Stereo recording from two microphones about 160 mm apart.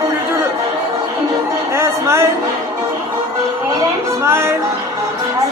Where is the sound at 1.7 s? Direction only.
15° right (ahead or behind).